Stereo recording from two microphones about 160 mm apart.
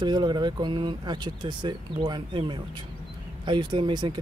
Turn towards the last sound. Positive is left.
turn(degrees=-30)  # may be behind; listen again after turning